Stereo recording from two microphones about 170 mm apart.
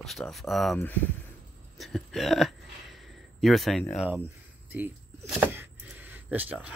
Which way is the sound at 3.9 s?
10° right (ahead or behind).